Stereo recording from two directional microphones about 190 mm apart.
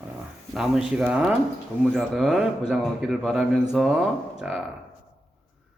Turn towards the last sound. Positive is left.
turn(degrees=-5)  # may be behind; listen again after turning